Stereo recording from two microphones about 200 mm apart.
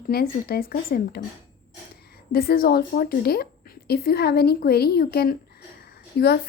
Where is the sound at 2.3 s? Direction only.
50° left (ahead or behind).